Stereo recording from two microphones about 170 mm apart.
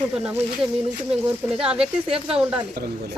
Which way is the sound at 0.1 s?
5° right (ahead or behind).